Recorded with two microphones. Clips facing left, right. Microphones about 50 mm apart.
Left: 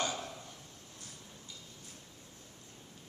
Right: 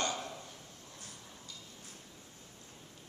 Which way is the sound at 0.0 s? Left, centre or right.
Centre.